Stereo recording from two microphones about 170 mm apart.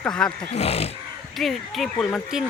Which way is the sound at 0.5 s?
40° left (ahead or behind).